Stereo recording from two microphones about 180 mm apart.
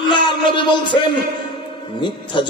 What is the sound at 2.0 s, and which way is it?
Speech, 25° left (ahead or behind).